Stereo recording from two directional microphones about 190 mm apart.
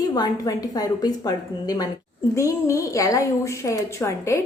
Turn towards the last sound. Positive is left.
turn(degrees=15)  # may be behind; listen again after turning